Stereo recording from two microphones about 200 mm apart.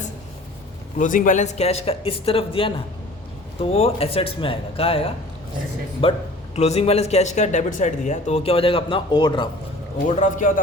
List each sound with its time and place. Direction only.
0.9 s speech: 40° left (ahead or behind); by 9.5 s 25° left (ahead or behind)
10.2 s speech: 40° left (ahead or behind)